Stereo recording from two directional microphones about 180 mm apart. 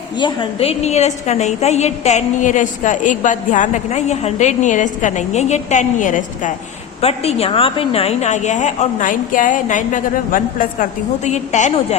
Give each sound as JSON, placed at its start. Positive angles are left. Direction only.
{"t": 0.2, "sound": "a woman's voice", "side_deg": 25}
{"t": 7.0, "sound": "a woman's voice", "side_deg": 35}